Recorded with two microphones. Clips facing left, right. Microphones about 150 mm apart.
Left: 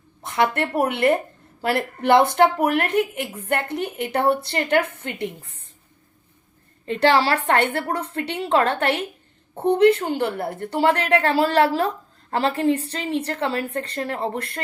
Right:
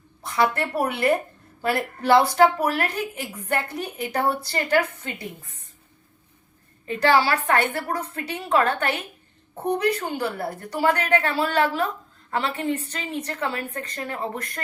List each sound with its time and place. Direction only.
0.2 s a sound: 20° left (ahead or behind)
0.6 s a woman's voice: 25° left (ahead or behind)
6.8 s a woman's voice: 30° left (ahead or behind)